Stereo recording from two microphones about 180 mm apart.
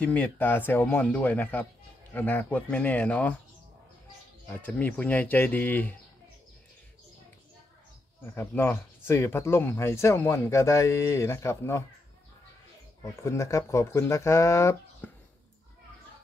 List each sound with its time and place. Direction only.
0.0 s speech: 5° left (ahead or behind)
4.5 s speech: 10° left (ahead or behind)
8.4 s speech: 10° left (ahead or behind)
13.0 s speech: 15° left (ahead or behind)